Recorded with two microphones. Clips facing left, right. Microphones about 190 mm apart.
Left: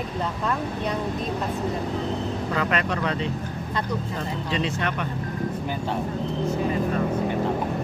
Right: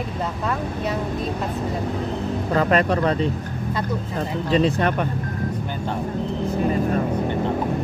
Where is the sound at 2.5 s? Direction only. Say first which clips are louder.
Right 8 dB; 40° right (ahead or behind).